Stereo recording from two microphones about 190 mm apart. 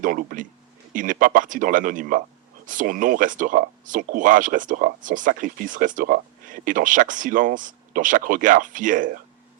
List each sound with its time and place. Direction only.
0.0 s speech: 45° right (ahead or behind)